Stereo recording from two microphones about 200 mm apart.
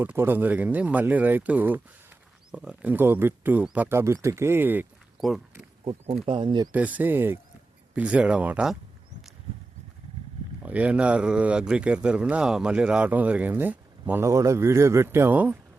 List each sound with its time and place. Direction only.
0.0 s speech: 10° right (ahead or behind)
5.8 s speech: 30° right (ahead or behind)
6.7 s speech: 10° right (ahead or behind)
10.6 s speech: 5° right (ahead or behind)